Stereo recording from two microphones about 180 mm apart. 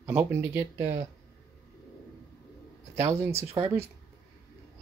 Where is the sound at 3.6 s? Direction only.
30° right (ahead or behind).